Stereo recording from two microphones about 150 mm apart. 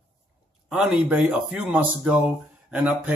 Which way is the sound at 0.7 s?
5° right (ahead or behind).